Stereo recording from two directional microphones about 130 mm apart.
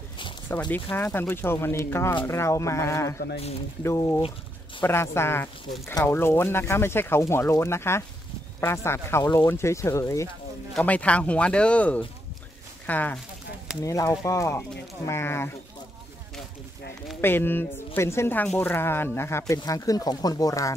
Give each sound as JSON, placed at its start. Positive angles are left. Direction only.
{"t": 0.7, "sound": "speech", "side_deg": 15}
{"t": 10.7, "sound": "speech", "side_deg": 10}
{"t": 13.8, "sound": "speech", "side_deg": 25}
{"t": 17.2, "sound": "speech", "side_deg": 15}